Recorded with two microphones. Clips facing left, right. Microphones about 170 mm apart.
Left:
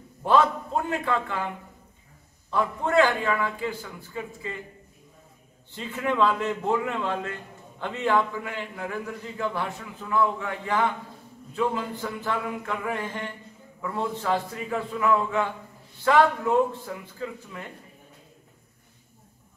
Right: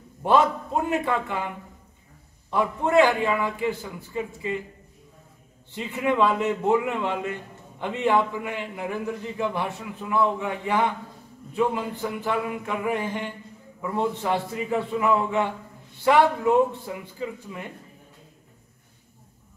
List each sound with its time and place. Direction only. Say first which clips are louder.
0.8 s a man's voice: right 4 dB; 15° right (ahead or behind)
2.5 s a man's voice: right 2 dB; 15° right (ahead or behind)
5.8 s a man's voice: right 2 dB; 15° right (ahead or behind)